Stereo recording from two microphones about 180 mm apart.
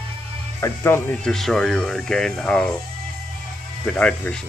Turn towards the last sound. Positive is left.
turn(degrees=5)  # may be behind; listen again after turning